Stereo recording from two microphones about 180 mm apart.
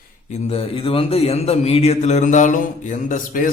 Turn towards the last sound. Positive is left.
turn(degrees=45)  # may be behind; listen again after turning